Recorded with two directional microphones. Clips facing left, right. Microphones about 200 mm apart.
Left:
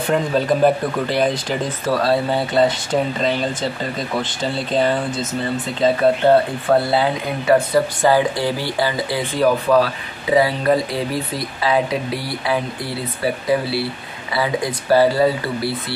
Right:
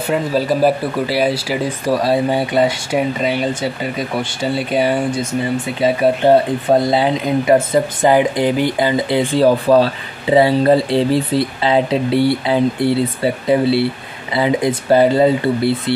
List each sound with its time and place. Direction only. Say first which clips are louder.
0.1 s speech: right 1 dB; 5° right (ahead or behind); by 15.7 s 20° right (ahead or behind)